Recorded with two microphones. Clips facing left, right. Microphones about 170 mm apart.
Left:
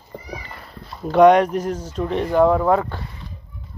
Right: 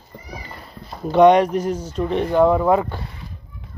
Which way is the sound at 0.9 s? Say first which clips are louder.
Even; centre (ahead or behind).